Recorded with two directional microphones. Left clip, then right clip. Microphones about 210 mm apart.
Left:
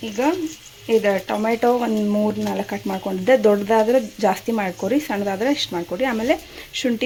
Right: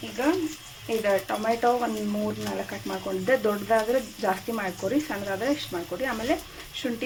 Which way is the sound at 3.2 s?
45° left (ahead or behind).